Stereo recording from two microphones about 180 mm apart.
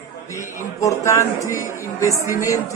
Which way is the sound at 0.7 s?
15° left (ahead or behind).